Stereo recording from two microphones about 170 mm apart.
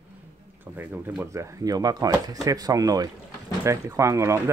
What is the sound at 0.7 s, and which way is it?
Speech, 10° right (ahead or behind).